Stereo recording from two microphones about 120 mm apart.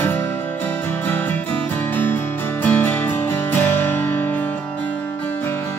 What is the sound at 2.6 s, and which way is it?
Music, 15° left (ahead or behind).